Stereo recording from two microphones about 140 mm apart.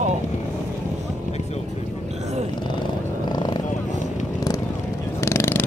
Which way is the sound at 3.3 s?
30° left (ahead or behind).